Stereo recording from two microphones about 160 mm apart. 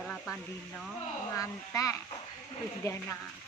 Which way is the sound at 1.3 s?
20° left (ahead or behind).